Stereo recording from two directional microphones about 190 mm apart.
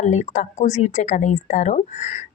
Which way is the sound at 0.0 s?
40° left (ahead or behind).